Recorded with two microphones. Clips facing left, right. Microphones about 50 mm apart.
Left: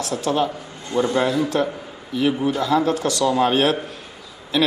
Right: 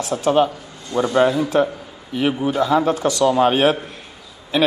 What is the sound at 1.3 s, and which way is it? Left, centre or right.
A man's voice, right.